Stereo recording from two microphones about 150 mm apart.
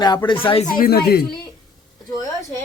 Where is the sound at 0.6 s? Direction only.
70° left (ahead or behind); by 1.4 s 90° left.